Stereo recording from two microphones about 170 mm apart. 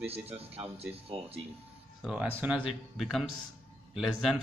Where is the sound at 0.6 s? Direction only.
10° right (ahead or behind).